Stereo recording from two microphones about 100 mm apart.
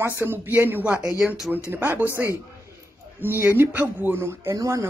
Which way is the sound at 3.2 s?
20° right (ahead or behind).